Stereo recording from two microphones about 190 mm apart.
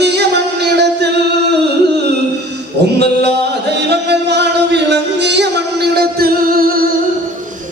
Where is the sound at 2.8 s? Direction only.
65° right (ahead or behind).